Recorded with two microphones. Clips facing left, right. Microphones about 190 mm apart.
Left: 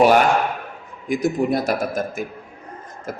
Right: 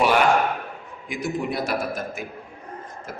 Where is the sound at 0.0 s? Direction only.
45° left (ahead or behind).